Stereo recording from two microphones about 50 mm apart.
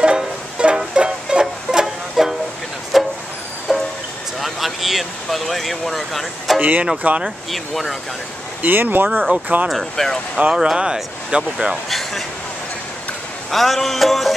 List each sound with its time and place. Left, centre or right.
0.0 s music: centre
2.9 s vehicle: centre
3.7 s music: centre
4.4 s a sound: centre
6.6 s speech: right
7.2 s music: centre
8.6 s speech: right
9.7 s music: centre
10.5 s speech: centre
11.9 s speech: centre
13.5 s music: centre